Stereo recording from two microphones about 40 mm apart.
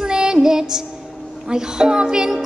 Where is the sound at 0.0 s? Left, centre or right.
Centre.